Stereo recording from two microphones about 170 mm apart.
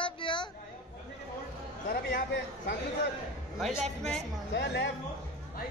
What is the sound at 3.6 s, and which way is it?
Speech, centre (ahead or behind).